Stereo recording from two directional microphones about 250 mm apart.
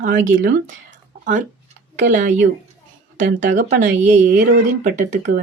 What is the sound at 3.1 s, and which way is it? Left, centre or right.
A woman's voice, right.